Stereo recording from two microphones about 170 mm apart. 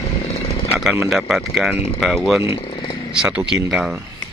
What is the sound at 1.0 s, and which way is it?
Speech, centre (ahead or behind).